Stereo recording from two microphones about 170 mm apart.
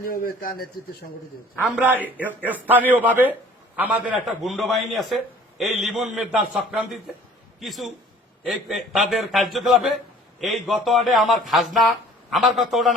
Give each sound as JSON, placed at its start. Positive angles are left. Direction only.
{"t": 0.0, "sound": "a man's voice", "side_deg": 60}
{"t": 1.6, "sound": "a man's voice", "side_deg": -5}